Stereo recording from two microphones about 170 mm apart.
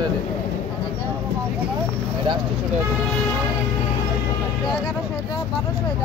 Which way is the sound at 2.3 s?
25° right (ahead or behind).